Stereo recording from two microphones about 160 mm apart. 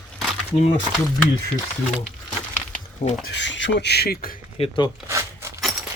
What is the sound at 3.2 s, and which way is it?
Speech, 90° left.